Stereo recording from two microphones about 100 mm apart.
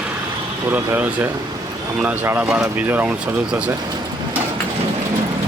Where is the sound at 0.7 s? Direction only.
20° right (ahead or behind).